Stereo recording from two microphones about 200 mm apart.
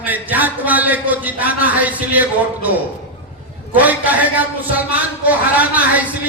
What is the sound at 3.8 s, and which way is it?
A man's voice, 10° right (ahead or behind).